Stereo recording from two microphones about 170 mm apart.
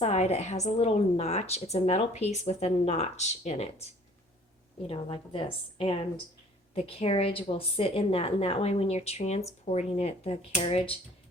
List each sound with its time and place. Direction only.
0.0 s a woman's voice: 40° left (ahead or behind)
4.9 s a woman's voice: 35° left (ahead or behind)